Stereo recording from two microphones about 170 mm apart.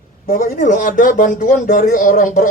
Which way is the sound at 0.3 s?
50° left (ahead or behind).